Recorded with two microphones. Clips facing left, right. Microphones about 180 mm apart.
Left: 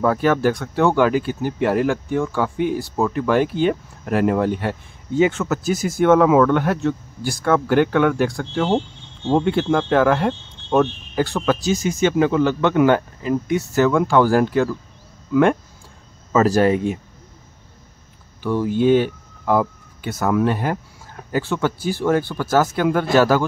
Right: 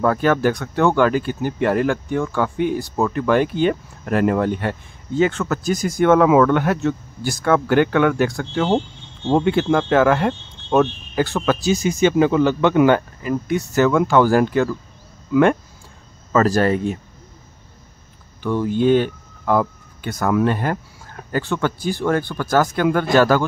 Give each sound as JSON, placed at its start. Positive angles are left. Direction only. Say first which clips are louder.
{"t": 0.0, "sound": "speech", "louder": "even", "side_deg": 5}
{"t": 11.7, "sound": "speech", "louder": "right 4 dB", "side_deg": -15}
{"t": 13.2, "sound": "speech", "louder": "left 1 dB", "side_deg": 20}
{"t": 13.6, "sound": "speech", "louder": "right 2 dB", "side_deg": 0}
{"t": 15.3, "sound": "speech", "louder": "right 1 dB", "side_deg": -5}
{"t": 16.3, "sound": "speech", "louder": "left 1 dB", "side_deg": 10}
{"t": 18.4, "sound": "speech", "louder": "even", "side_deg": 10}